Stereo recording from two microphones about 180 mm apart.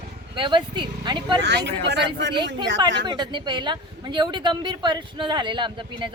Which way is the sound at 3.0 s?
25° right (ahead or behind).